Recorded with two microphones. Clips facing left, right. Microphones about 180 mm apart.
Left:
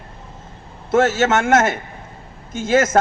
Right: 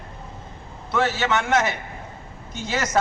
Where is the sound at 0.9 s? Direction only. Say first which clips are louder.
Left 7 dB; 45° left (ahead or behind).